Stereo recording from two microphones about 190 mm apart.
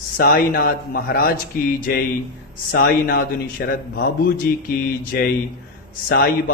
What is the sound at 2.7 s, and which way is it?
A man's voice, 50° left (ahead or behind).